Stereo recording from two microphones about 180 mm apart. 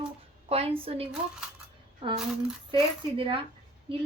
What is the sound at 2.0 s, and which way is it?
Speech, 35° right (ahead or behind).